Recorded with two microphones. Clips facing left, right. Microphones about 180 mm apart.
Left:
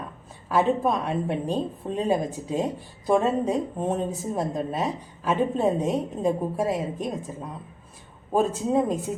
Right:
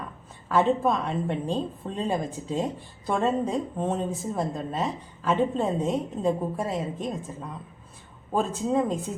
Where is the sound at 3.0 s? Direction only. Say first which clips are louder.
Left 3 dB; 10° left (ahead or behind).